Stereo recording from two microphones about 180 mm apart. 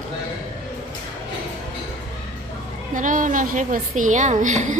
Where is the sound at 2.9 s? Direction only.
45° right (ahead or behind).